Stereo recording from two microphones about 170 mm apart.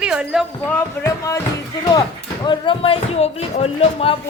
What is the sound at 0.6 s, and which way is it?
Speech, 15° left (ahead or behind).